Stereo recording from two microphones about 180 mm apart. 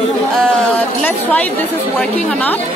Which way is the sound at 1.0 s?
10° left (ahead or behind).